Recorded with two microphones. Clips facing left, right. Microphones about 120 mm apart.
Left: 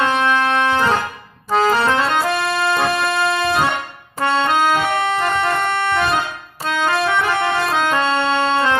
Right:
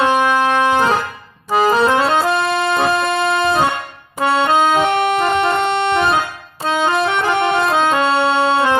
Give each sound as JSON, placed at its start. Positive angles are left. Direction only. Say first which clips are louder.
{"t": 0.0, "sound": "organ", "louder": "right 3 dB", "side_deg": -15}
{"t": 1.5, "sound": "accordion", "louder": "right 2 dB", "side_deg": -5}
{"t": 2.0, "sound": "accordion", "louder": "right 3 dB", "side_deg": -25}
{"t": 6.7, "sound": "organ", "louder": "right 2 dB", "side_deg": -20}